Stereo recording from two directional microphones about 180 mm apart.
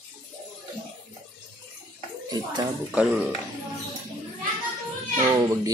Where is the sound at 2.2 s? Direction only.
20° right (ahead or behind).